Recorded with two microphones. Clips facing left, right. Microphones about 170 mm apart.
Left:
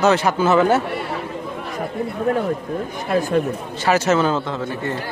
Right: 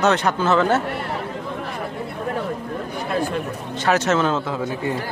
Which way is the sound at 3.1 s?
45° left (ahead or behind).